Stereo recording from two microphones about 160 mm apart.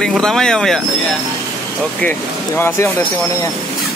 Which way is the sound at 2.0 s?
15° left (ahead or behind).